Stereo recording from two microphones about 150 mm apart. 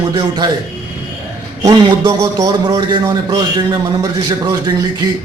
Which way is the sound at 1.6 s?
25° right (ahead or behind).